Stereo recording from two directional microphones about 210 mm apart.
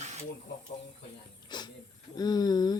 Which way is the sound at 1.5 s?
20° left (ahead or behind).